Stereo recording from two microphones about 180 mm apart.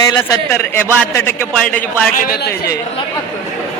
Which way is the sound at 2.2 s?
65° left (ahead or behind).